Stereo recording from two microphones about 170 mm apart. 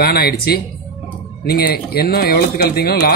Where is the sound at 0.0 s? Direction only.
65° left (ahead or behind).